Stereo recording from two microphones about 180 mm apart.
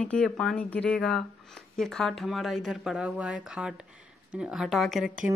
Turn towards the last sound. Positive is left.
turn(degrees=0)  # may be behind; listen again after turning